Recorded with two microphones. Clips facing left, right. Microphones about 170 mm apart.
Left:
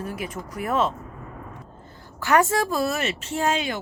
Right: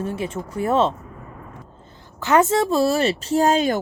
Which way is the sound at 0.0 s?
25° right (ahead or behind).